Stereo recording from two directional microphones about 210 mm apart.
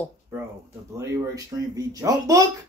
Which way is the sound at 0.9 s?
15° right (ahead or behind).